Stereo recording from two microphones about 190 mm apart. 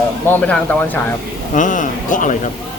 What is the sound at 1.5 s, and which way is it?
Speech, 40° left (ahead or behind).